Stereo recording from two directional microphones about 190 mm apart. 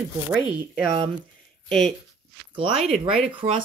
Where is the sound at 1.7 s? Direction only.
5° left (ahead or behind).